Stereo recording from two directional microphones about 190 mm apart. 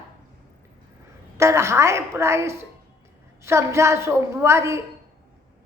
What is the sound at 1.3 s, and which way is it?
A woman's voice, 15° right (ahead or behind).